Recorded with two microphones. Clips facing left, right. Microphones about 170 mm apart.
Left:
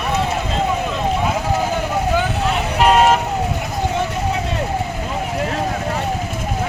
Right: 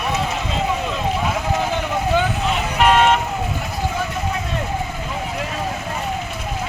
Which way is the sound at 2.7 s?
35° left (ahead or behind).